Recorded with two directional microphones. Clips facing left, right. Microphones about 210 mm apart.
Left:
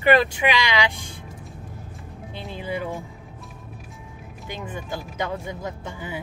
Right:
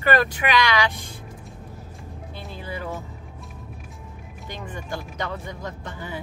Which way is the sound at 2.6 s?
15° left (ahead or behind).